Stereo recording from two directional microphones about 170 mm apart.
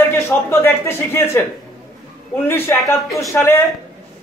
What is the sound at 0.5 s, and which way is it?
A man's voice, 15° left (ahead or behind).